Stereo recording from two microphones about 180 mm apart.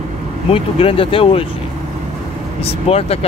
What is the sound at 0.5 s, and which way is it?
Speech, 30° left (ahead or behind).